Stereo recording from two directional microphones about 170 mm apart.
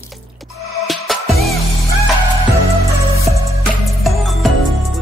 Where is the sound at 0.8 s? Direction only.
Centre (ahead or behind).